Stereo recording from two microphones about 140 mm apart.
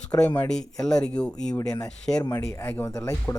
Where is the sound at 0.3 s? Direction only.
5° left (ahead or behind).